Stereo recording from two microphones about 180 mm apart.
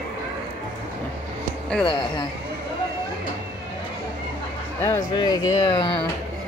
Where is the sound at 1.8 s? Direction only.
30° left (ahead or behind).